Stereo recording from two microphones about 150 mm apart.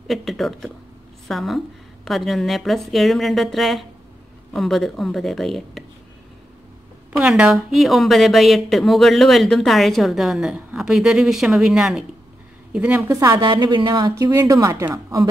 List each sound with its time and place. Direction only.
0.1 s a woman's voice: centre (ahead or behind)
7.1 s a woman's voice: 10° right (ahead or behind)
13.1 s a woman's voice: 25° right (ahead or behind)